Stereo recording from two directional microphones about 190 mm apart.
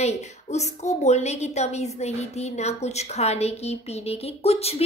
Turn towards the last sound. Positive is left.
turn(degrees=35)  # may be behind; listen again after turning